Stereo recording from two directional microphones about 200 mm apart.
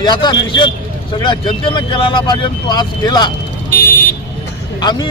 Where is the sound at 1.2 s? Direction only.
25° left (ahead or behind).